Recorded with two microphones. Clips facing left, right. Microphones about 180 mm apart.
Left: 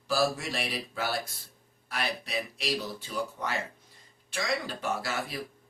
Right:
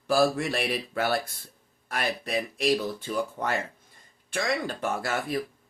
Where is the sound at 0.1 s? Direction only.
55° right (ahead or behind).